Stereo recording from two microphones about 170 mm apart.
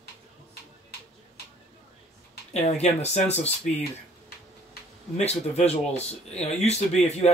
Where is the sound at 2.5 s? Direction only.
40° left (ahead or behind).